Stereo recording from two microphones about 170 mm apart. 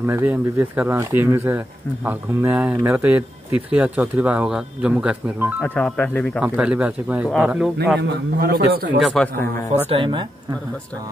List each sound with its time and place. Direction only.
0.0 s speech: 10° right (ahead or behind)
5.6 s speech: 5° left (ahead or behind)
6.4 s speech: 5° right (ahead or behind)
8.0 s a man's voice: 90° right
9.0 s speech: centre (ahead or behind)
9.8 s speech: 30° right (ahead or behind)